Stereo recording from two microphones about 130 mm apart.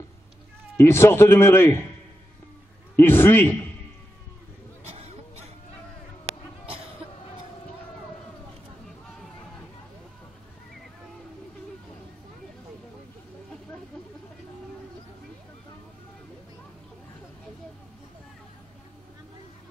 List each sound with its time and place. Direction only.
0.7 s a man's voice: 20° left (ahead or behind)
3.0 s a man's voice: 15° left (ahead or behind)
4.8 s a sound: 55° right (ahead or behind)